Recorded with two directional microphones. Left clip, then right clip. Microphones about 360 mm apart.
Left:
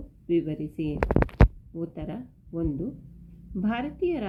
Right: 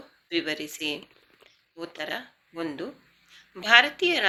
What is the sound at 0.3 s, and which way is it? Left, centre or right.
A woman's voice, right.